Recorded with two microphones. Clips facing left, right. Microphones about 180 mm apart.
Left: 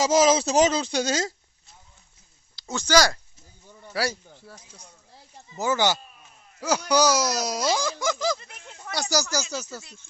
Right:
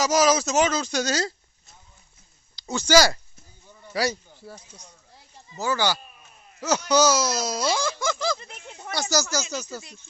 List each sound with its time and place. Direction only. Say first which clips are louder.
0.0 s speech: left 1 dB; 25° left (ahead or behind)
2.6 s a sound: right 2 dB; centre (ahead or behind)
2.8 s speech: right 2 dB; 5° right (ahead or behind)
5.5 s speech: left 1 dB; 20° left (ahead or behind)
8.4 s speech: right 3 dB; 20° right (ahead or behind)
8.9 s speech: right 1 dB; 15° left (ahead or behind)
9.4 s speech: right 1 dB; 15° right (ahead or behind)